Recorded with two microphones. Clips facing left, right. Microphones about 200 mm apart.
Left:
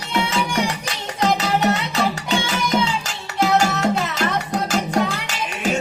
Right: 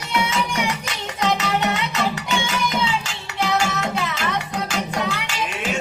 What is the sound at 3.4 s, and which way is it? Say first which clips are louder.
Music: left 4 dB; 40° left (ahead or behind).